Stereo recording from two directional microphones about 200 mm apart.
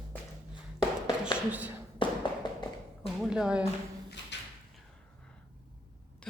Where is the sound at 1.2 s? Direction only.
5° right (ahead or behind).